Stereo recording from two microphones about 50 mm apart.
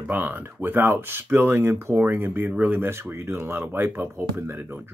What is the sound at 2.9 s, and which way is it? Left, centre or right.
Speech, right.